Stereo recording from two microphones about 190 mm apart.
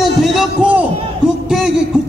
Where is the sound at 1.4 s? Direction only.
Centre (ahead or behind).